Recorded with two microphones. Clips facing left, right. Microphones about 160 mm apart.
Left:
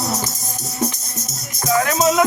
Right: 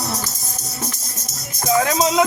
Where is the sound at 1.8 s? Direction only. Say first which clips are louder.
Left 3 dB; 20° right (ahead or behind).